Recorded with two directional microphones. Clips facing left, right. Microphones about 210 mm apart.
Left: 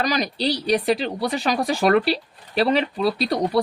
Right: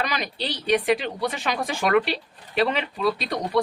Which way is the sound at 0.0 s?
40° left (ahead or behind).